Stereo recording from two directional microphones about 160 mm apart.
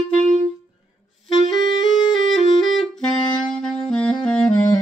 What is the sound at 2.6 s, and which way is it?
Saxophone, centre (ahead or behind).